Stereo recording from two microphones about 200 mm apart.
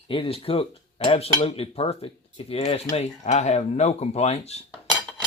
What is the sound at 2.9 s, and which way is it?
Speech, 35° left (ahead or behind).